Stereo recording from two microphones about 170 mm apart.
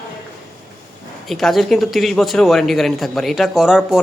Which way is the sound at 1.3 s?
Centre (ahead or behind).